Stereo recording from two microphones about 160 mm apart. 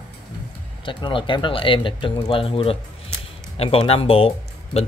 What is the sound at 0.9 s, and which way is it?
Speech, 30° left (ahead or behind).